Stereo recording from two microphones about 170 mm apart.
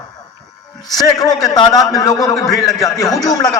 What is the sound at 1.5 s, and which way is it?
A man's voice, 20° left (ahead or behind).